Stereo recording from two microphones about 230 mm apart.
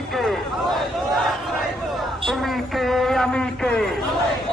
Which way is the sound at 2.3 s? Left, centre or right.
Centre.